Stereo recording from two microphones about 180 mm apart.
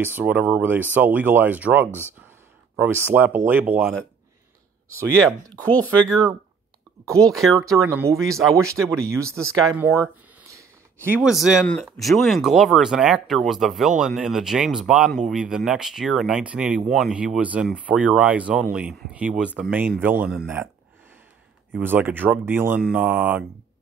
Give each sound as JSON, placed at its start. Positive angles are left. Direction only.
{"t": 0.0, "sound": "speech", "side_deg": -10}
{"t": 1.9, "sound": "speech", "side_deg": 10}
{"t": 3.1, "sound": "speech", "side_deg": -10}
{"t": 5.5, "sound": "speech", "side_deg": 10}
{"t": 7.1, "sound": "speech", "side_deg": -20}
{"t": 7.3, "sound": "speech", "side_deg": 0}
{"t": 7.9, "sound": "speech", "side_deg": -10}
{"t": 8.2, "sound": "speech", "side_deg": 0}
{"t": 8.5, "sound": "speech", "side_deg": -15}
{"t": 11.2, "sound": "speech", "side_deg": -5}
{"t": 21.7, "sound": "speech", "side_deg": -10}